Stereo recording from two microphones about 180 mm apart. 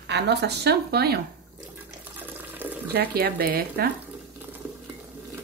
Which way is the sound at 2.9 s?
60° right (ahead or behind).